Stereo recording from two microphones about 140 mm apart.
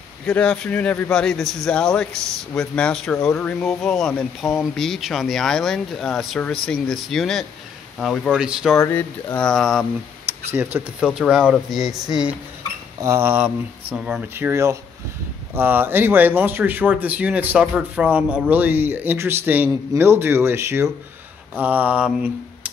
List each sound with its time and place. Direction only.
0.3 s a man's voice: 5° left (ahead or behind)
8.7 s a man's voice: 15° left (ahead or behind)
10.5 s speech: 10° right (ahead or behind)
13.0 s speech: 20° right (ahead or behind)
14.3 s speech: 20° right (ahead or behind)